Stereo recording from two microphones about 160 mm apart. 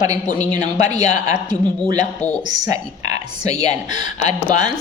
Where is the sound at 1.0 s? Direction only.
45° left (ahead or behind).